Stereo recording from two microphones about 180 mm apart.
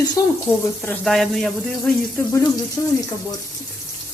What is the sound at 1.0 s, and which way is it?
Speech, centre (ahead or behind).